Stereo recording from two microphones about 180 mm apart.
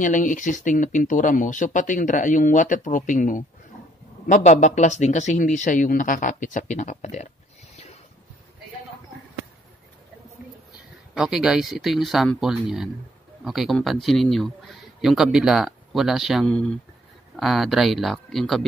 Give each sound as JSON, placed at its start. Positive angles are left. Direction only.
{"t": 0.0, "sound": "speech", "side_deg": 45}
{"t": 7.7, "sound": "boat", "side_deg": 35}
{"t": 11.1, "sound": "speech", "side_deg": -5}